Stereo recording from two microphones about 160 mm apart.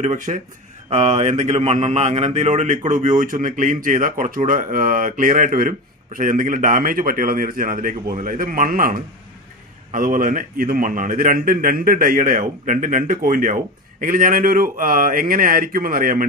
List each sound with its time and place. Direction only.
0.0 s speech: 50° right (ahead or behind)